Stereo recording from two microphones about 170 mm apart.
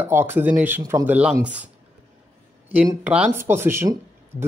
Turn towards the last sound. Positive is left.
turn(degrees=-15)  # may be behind; listen again after turning